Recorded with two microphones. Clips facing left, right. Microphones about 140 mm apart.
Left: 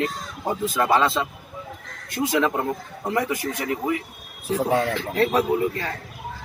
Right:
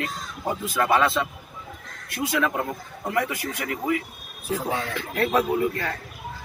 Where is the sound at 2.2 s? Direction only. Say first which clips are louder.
Left 3 dB; 25° left (ahead or behind).